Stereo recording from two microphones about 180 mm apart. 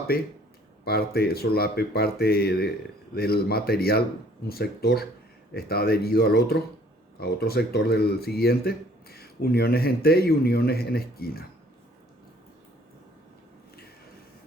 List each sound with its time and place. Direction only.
0.9 s speech: 60° left (ahead or behind)